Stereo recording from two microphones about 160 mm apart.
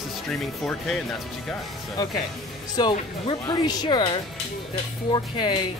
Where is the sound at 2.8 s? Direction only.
25° left (ahead or behind).